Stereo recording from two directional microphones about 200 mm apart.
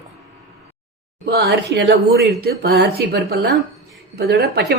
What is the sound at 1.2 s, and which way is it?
A woman's voice, 55° right (ahead or behind).